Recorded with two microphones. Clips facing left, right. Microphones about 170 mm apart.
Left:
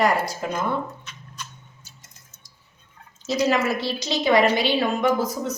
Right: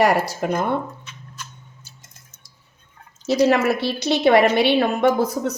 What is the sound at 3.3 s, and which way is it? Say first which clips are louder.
A woman's voice: right 5 dB; 60° right (ahead or behind).